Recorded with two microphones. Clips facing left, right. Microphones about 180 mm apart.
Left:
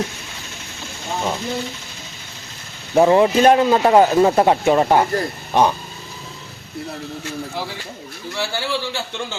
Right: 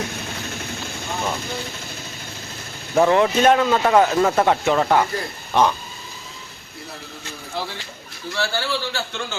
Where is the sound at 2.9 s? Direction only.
30° left (ahead or behind).